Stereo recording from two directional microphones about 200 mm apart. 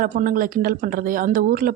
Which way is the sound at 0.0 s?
45° right (ahead or behind).